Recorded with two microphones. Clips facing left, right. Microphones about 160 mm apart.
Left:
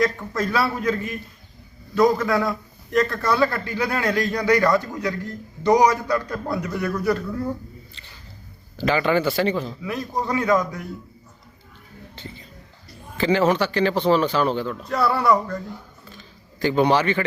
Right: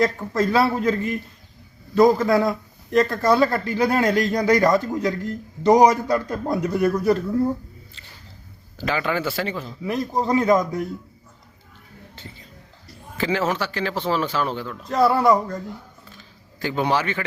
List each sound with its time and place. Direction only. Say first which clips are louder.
0.0 s a man's voice: right 2 dB; 30° right (ahead or behind)
8.8 s speech: left 4 dB; centre (ahead or behind)
9.8 s a man's voice: right 3 dB; 30° right (ahead or behind)
13.1 s speech: left 4 dB; centre (ahead or behind)
15.1 s a man's voice: right 2 dB; 25° right (ahead or behind)
16.1 s a sound: left 2 dB; 5° right (ahead or behind)